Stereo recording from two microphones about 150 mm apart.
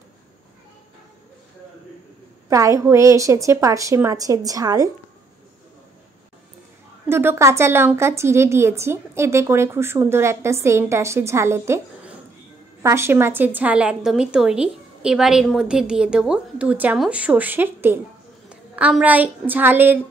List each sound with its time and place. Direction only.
2.5 s a woman's voice: 20° right (ahead or behind)
7.1 s a woman's voice: 15° right (ahead or behind)